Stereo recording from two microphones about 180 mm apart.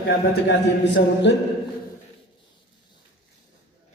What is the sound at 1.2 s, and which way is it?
Speech, 80° left.